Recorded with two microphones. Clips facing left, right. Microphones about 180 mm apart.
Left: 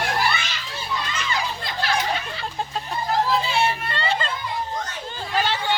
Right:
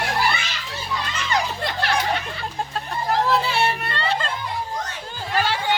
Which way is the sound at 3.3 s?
65° right (ahead or behind).